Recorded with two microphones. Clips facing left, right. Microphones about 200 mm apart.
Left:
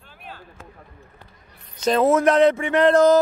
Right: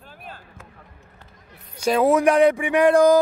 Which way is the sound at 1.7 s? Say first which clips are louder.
Even; 10° right (ahead or behind).